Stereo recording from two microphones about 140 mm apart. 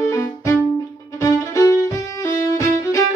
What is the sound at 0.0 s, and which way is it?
Music, 20° left (ahead or behind).